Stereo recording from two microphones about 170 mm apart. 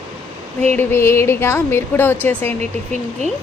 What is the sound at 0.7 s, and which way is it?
A woman's voice, 15° left (ahead or behind).